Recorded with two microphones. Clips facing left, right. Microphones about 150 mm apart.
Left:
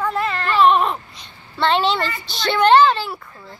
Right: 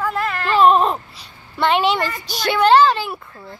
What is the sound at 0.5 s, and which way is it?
Speech, 40° right (ahead or behind).